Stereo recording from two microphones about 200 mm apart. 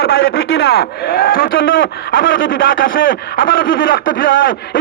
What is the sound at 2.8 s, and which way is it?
Speech, 45° left (ahead or behind).